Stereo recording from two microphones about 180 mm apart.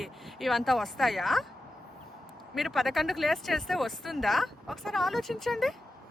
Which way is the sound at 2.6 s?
Centre (ahead or behind).